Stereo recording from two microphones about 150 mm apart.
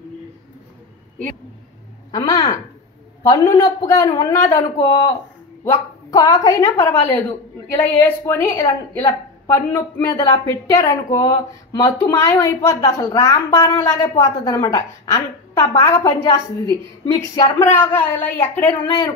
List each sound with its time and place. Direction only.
2.0 s speech: 25° left (ahead or behind)
5.7 s a woman's voice: 25° left (ahead or behind)